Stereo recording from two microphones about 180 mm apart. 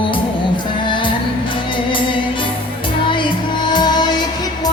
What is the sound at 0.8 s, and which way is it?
Music, 25° left (ahead or behind).